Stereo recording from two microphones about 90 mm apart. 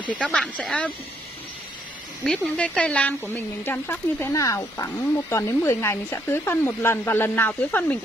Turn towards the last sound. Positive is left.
turn(degrees=20)  # may be behind; listen again after turning